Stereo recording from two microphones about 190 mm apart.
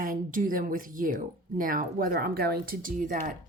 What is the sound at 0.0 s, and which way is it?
Speech, 45° right (ahead or behind).